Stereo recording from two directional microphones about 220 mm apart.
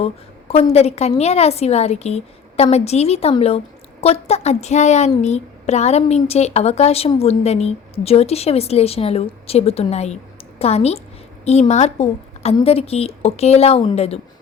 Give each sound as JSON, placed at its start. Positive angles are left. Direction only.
{"t": 0.0, "sound": "a woman's voice", "side_deg": 25}